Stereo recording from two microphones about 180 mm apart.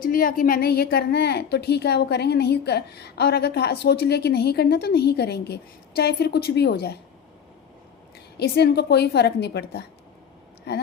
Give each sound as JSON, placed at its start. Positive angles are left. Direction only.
{"t": 0.0, "sound": "a woman's voice", "side_deg": 50}
{"t": 8.4, "sound": "a woman's voice", "side_deg": 65}